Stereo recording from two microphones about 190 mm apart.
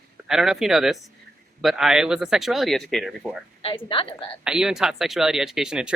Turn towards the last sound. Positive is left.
turn(degrees=-5)  # may be behind; listen again after turning